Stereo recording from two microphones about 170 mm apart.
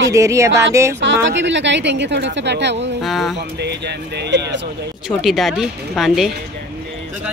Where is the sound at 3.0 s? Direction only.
Centre (ahead or behind).